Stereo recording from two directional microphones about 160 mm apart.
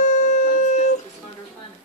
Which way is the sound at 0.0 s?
50° left (ahead or behind).